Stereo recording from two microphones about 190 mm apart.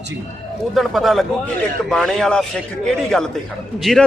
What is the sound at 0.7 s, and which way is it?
A man's voice, centre (ahead or behind).